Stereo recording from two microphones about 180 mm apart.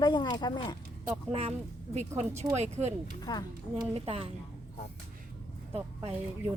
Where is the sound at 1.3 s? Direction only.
35° right (ahead or behind).